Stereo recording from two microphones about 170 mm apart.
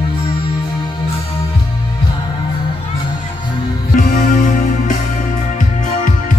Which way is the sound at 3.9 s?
55° left (ahead or behind).